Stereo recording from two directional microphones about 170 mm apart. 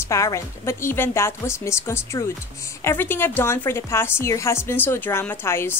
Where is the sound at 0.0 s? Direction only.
20° left (ahead or behind).